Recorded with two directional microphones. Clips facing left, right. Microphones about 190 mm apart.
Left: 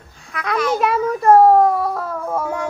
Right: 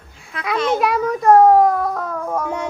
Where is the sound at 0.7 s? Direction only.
Centre (ahead or behind).